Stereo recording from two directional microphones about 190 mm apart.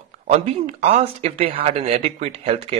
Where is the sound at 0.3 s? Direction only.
35° right (ahead or behind).